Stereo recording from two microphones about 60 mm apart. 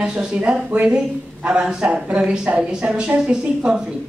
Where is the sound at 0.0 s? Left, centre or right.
Centre.